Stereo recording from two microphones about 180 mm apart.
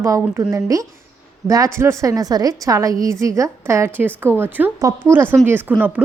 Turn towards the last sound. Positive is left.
turn(degrees=-10)  # may be behind; listen again after turning